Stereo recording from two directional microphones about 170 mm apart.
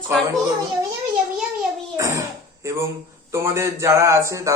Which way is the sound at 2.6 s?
15° right (ahead or behind).